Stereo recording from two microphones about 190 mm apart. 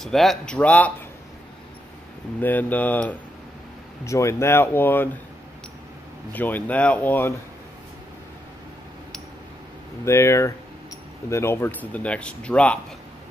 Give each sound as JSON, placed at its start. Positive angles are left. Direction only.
{"t": 0.0, "sound": "speech", "side_deg": 0}
{"t": 2.4, "sound": "speech", "side_deg": 10}
{"t": 6.3, "sound": "speech", "side_deg": 10}
{"t": 10.0, "sound": "speech", "side_deg": 15}